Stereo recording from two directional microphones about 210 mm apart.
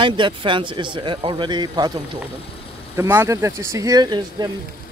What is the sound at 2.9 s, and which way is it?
Speech, 10° right (ahead or behind).